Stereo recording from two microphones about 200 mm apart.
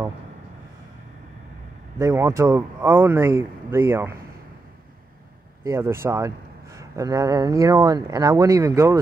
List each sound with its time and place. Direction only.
2.0 s a man's voice: 15° right (ahead or behind)
5.6 s a man's voice: 15° right (ahead or behind)